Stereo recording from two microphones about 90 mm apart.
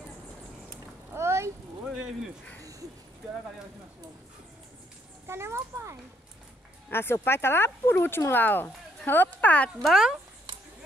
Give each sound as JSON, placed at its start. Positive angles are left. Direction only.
{"t": 1.1, "sound": "a sound", "side_deg": -30}
{"t": 5.2, "sound": "a child's voice", "side_deg": -30}
{"t": 6.9, "sound": "speech", "side_deg": 25}
{"t": 9.8, "sound": "speech", "side_deg": -5}